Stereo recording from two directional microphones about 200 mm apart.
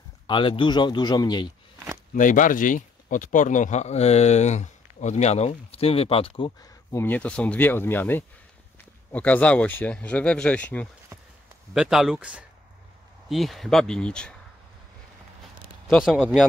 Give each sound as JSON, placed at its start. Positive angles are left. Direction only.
{"t": 0.3, "sound": "a man's voice", "side_deg": 25}
{"t": 2.1, "sound": "speech", "side_deg": 40}
{"t": 11.1, "sound": "a sound", "side_deg": -15}
{"t": 11.7, "sound": "speech", "side_deg": 0}
{"t": 15.9, "sound": "speech", "side_deg": 0}